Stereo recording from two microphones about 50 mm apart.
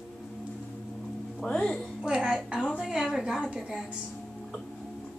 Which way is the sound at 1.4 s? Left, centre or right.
Centre.